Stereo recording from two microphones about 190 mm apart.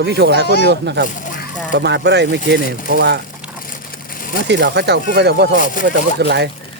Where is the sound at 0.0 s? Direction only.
60° right (ahead or behind).